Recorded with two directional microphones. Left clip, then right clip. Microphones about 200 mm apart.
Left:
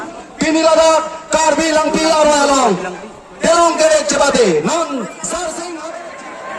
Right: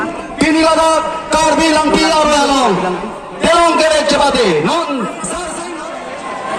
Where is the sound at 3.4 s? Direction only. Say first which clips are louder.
Right 1 dB; 5° left (ahead or behind).